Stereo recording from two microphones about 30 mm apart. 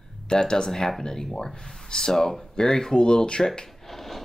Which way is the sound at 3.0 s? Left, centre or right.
Left.